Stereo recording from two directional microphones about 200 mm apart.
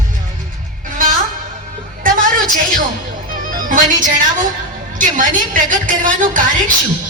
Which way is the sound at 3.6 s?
40° right (ahead or behind).